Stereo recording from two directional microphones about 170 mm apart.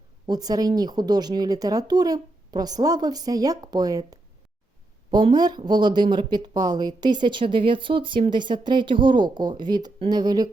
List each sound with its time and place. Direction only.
0.3 s speech: 20° right (ahead or behind)